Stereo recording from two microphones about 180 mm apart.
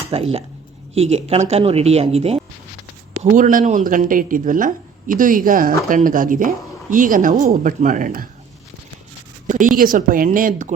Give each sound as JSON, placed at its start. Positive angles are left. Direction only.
{"t": 0.1, "sound": "speech", "side_deg": -35}
{"t": 3.3, "sound": "speech", "side_deg": -45}
{"t": 9.5, "sound": "speech", "side_deg": -45}